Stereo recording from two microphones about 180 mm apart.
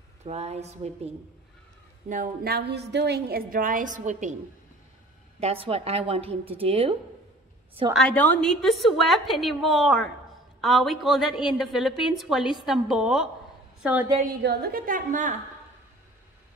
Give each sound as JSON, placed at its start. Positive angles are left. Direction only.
{"t": 0.2, "sound": "a woman's voice", "side_deg": -35}
{"t": 2.0, "sound": "a woman's voice", "side_deg": -50}
{"t": 5.4, "sound": "a woman's voice", "side_deg": -35}
{"t": 7.9, "sound": "a woman's voice", "side_deg": 5}
{"t": 14.4, "sound": "a woman's voice", "side_deg": -60}